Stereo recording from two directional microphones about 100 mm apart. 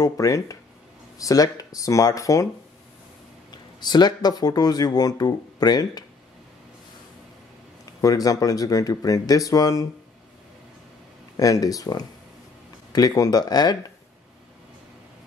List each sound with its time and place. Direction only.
0.0 s speech: 35° left (ahead or behind)
3.8 s speech: 45° left (ahead or behind)
7.8 s speech: 35° left (ahead or behind)
11.3 s speech: 35° left (ahead or behind)